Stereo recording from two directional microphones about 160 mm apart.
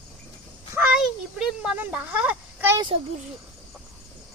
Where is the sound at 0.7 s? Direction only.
5° right (ahead or behind).